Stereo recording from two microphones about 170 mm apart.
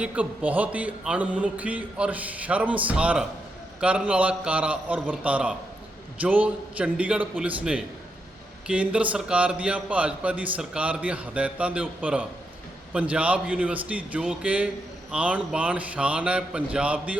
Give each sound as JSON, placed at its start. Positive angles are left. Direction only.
{"t": 0.0, "sound": "a man's voice", "side_deg": -10}